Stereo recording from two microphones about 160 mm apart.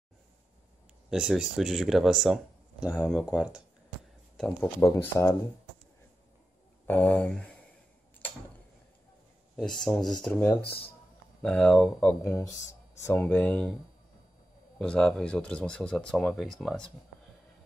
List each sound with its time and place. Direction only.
1.1 s speech: centre (ahead or behind)
4.4 s speech: 10° left (ahead or behind)
6.9 s speech: 10° left (ahead or behind)
9.6 s speech: 5° left (ahead or behind)
11.4 s speech: 5° left (ahead or behind)
12.2 s speech: 20° left (ahead or behind)
14.8 s speech: 5° left (ahead or behind)